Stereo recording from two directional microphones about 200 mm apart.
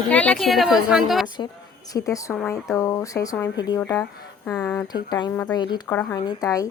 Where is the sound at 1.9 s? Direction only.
15° left (ahead or behind).